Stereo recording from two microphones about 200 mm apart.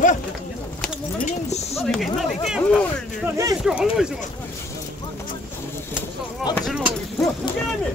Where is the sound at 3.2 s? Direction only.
15° right (ahead or behind).